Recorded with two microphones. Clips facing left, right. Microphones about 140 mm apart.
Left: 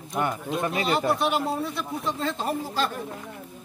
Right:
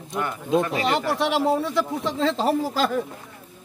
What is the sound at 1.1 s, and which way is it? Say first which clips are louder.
Speech: right 3 dB; 90° right.